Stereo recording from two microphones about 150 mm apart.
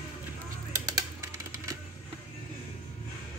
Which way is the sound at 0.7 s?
25° right (ahead or behind).